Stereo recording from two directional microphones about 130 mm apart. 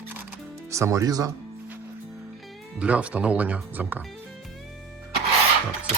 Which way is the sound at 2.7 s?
10° right (ahead or behind).